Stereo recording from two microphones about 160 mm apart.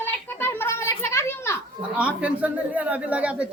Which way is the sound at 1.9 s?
10° right (ahead or behind).